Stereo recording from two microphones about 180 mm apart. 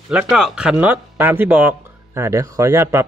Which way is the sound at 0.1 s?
5° right (ahead or behind).